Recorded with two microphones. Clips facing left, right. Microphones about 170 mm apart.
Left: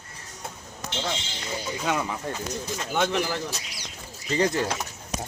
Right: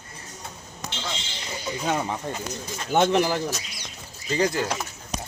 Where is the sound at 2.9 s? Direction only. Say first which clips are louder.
Right 6 dB; 55° right (ahead or behind).